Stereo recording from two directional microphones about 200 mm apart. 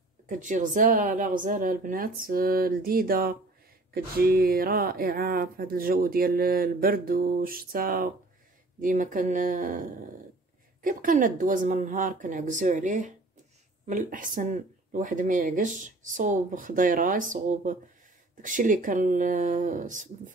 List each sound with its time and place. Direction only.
0.3 s speech: 40° right (ahead or behind)